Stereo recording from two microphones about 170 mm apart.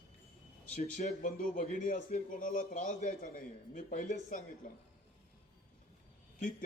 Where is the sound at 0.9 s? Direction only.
50° left (ahead or behind).